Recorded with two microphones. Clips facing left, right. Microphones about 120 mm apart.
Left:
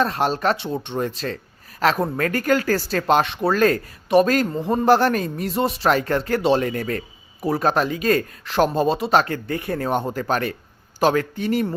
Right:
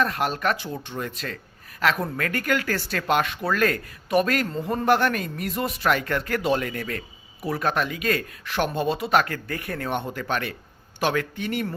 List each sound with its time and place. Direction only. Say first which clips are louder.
0.0 s speech: left 4 dB; 30° left (ahead or behind)